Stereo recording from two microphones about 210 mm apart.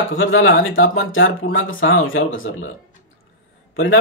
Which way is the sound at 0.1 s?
70° left (ahead or behind).